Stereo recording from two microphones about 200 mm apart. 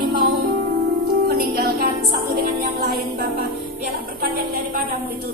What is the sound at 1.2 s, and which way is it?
Music, 50° right (ahead or behind).